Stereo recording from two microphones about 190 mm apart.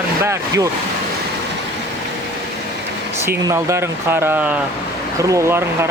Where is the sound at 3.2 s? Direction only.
15° right (ahead or behind).